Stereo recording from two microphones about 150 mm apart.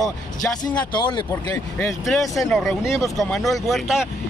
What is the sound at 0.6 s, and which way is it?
Speech, 30° left (ahead or behind).